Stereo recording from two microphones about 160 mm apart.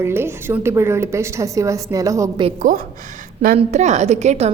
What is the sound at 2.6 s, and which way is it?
Speech, 55° right (ahead or behind).